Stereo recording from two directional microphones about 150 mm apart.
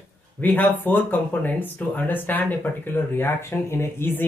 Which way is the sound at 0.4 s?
10° left (ahead or behind).